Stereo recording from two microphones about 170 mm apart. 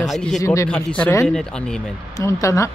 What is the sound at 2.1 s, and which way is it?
Speech, 20° left (ahead or behind).